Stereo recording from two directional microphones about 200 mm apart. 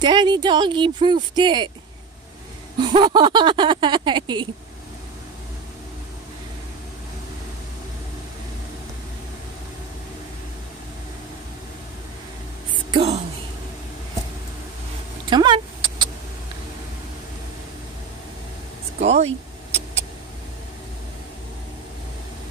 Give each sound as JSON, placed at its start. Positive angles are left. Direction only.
{"t": 0.0, "sound": "speech", "side_deg": -20}
{"t": 2.8, "sound": "speech", "side_deg": -25}
{"t": 12.9, "sound": "speech", "side_deg": -30}
{"t": 15.2, "sound": "vehicle", "side_deg": -20}
{"t": 18.9, "sound": "vehicle", "side_deg": -35}